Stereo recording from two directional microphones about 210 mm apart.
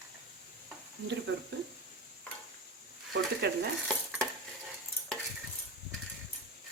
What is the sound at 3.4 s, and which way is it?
Speech, 50° right (ahead or behind).